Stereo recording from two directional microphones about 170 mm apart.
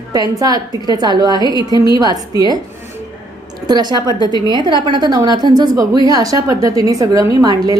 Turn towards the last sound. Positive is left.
turn(degrees=-25)  # may be behind; listen again after turning